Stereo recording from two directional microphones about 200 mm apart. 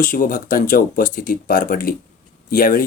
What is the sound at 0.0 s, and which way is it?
Speech, 45° left (ahead or behind).